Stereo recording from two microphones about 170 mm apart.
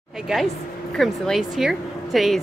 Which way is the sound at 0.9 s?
Centre (ahead or behind).